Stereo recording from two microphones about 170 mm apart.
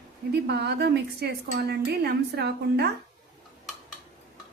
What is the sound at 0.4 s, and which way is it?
A woman's voice, 75° right (ahead or behind).